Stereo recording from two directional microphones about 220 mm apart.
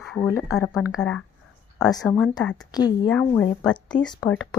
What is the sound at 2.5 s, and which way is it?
Speech, 20° left (ahead or behind).